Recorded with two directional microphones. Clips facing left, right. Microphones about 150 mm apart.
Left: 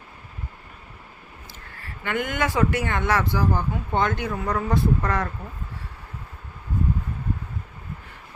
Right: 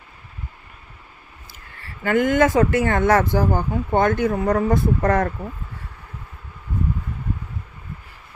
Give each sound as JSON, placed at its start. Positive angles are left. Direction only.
{"t": 2.0, "sound": "speech", "side_deg": -45}